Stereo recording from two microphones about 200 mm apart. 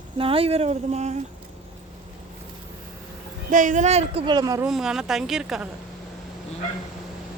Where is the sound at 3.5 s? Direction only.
40° right (ahead or behind); by 4.6 s 20° right (ahead or behind).